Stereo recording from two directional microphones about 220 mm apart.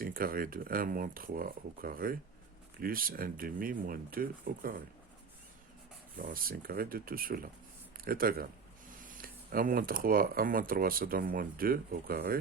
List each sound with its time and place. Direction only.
0.0 s speech: 40° right (ahead or behind)
6.1 s speech: 40° right (ahead or behind)